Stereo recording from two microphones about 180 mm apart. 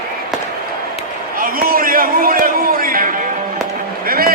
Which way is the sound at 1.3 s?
55° right (ahead or behind).